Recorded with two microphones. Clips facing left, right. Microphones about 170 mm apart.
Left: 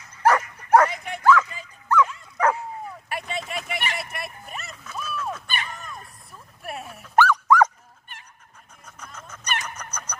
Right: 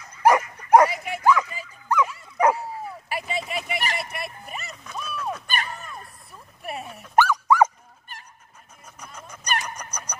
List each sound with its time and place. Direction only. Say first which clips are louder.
0.2 s dog: right 2 dB; 15° right (ahead or behind)
3.9 s music: right 2 dB; centre (ahead or behind)
4.9 s a sound: even; centre (ahead or behind)
5.8 s dog: even; centre (ahead or behind)
8.8 s a sound: even; 10° right (ahead or behind)
9.8 s fowl: even; 10° right (ahead or behind)